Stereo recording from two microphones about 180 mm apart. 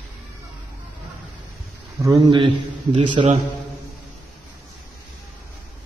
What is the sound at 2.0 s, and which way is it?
Speech, 25° right (ahead or behind).